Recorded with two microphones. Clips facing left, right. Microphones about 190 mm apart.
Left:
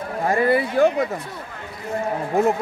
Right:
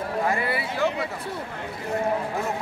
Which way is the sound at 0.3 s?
45° left (ahead or behind).